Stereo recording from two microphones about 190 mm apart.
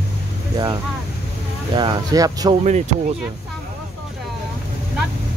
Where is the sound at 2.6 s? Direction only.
40° right (ahead or behind).